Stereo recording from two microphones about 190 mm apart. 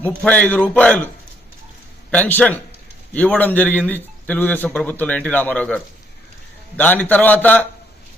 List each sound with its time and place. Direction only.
0.2 s a man's voice: 10° left (ahead or behind)
2.0 s a man's voice: 10° left (ahead or behind)